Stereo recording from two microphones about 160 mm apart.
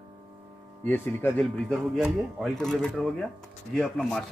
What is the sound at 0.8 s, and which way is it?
Speech, 10° left (ahead or behind).